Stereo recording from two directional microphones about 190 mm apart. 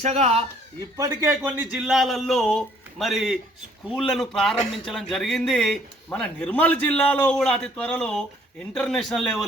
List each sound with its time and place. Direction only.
0.0 s speech: 35° right (ahead or behind)
0.9 s speech: 15° right (ahead or behind); by 9.5 s centre (ahead or behind)